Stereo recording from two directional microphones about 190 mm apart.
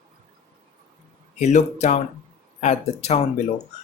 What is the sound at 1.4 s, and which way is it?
Speech, 35° left (ahead or behind).